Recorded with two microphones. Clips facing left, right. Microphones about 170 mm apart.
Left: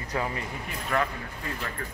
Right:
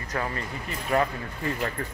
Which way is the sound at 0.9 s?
20° right (ahead or behind).